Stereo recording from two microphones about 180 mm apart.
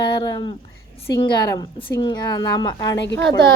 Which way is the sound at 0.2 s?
25° left (ahead or behind).